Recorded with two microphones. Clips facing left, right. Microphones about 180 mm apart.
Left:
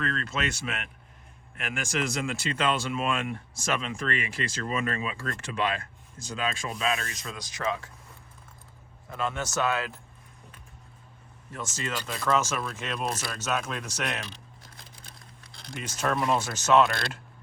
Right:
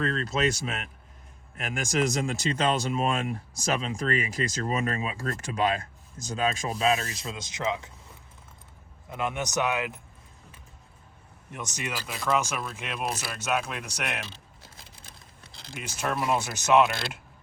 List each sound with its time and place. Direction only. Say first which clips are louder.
0.0 s speech: right 4 dB; 35° right (ahead or behind); by 7.9 s 20° right (ahead or behind)
9.0 s speech: right 1 dB; 15° right (ahead or behind)
11.5 s speech: left 1 dB; 15° right (ahead or behind)
15.7 s speech: left 2 dB; 10° right (ahead or behind)